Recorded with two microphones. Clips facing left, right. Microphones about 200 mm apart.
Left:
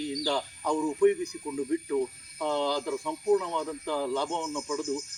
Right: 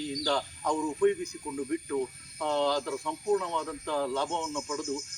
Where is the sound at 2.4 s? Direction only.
15° left (ahead or behind).